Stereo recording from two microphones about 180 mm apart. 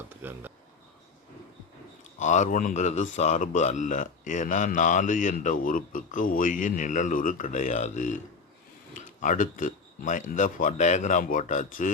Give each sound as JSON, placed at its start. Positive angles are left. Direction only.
{"t": 0.2, "sound": "speech", "side_deg": -10}
{"t": 2.1, "sound": "a man's voice", "side_deg": 40}